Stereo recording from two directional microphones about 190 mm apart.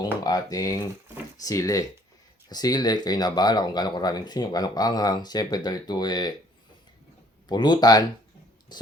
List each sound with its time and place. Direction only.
0.0 s speech: 20° left (ahead or behind)
7.4 s speech: 20° left (ahead or behind)